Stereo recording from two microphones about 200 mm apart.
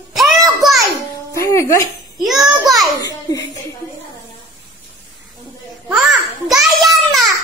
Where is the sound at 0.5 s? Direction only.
Centre (ahead or behind).